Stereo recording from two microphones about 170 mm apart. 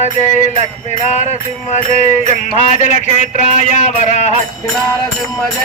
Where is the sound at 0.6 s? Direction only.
40° left (ahead or behind).